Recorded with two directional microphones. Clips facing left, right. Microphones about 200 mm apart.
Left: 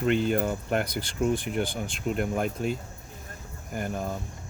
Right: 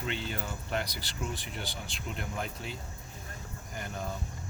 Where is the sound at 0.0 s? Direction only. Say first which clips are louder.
Left 12 dB; 50° left (ahead or behind).